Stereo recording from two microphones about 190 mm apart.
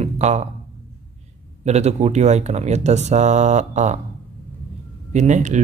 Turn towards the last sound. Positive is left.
turn(degrees=-40)  # may be behind; listen again after turning